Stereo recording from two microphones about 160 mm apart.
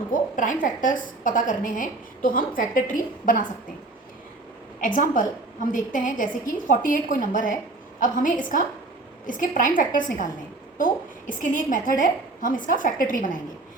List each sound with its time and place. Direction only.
0.1 s a woman's voice: 55° left (ahead or behind)
4.8 s a woman's voice: 55° left (ahead or behind)
11.4 s a woman's voice: 55° left (ahead or behind)